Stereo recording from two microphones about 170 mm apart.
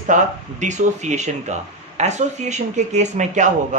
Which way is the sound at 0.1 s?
50° right (ahead or behind).